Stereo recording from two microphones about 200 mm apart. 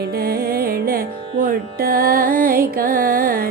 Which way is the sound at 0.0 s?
50° right (ahead or behind).